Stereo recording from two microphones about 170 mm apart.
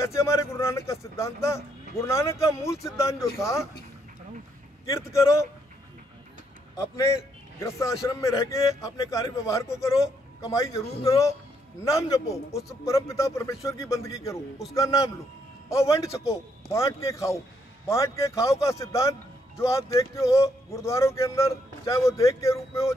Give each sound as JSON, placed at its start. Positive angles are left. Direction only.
{"t": 0.0, "sound": "speech", "side_deg": 15}
{"t": 4.8, "sound": "speech", "side_deg": 15}
{"t": 7.5, "sound": "a man's voice", "side_deg": 15}